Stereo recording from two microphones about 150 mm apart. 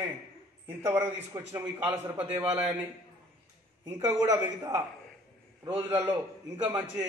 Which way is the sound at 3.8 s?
20° right (ahead or behind).